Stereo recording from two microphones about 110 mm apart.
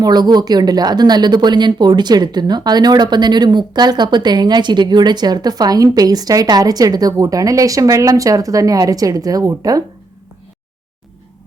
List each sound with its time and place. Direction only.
0.0 s speech: 40° right (ahead or behind)